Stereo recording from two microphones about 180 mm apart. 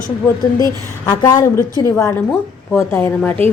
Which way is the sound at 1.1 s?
20° left (ahead or behind).